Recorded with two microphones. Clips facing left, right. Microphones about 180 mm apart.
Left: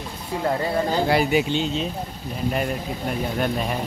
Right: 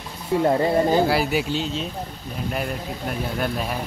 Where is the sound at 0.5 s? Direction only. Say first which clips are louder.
Right 3 dB; 20° right (ahead or behind).